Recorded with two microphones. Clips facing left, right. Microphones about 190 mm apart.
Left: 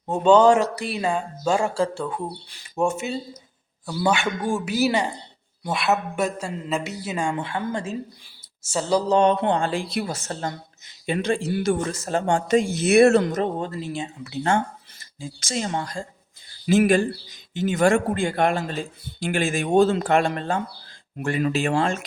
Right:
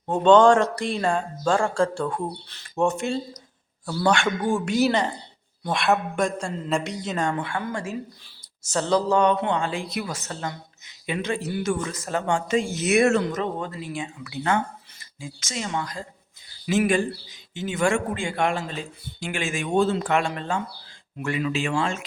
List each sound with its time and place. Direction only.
0.0 s speech: 5° left (ahead or behind)
7.3 s a sound: 25° left (ahead or behind)
8.6 s a sound: 10° left (ahead or behind); by 9.6 s 30° left (ahead or behind)
9.6 s speech: 35° left (ahead or behind)
11.9 s a sound: 30° left (ahead or behind)
12.2 s speech: 40° left (ahead or behind)
13.8 s a sound: 25° left (ahead or behind)
14.9 s speech: 40° left (ahead or behind)
16.7 s speech: 45° left (ahead or behind)
18.6 s speech: 50° left (ahead or behind)
19.4 s speech: 35° left (ahead or behind)
20.2 s speech: 55° left (ahead or behind)